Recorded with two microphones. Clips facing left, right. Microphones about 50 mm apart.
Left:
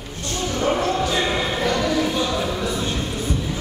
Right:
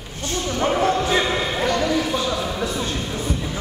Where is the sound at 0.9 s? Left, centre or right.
Centre.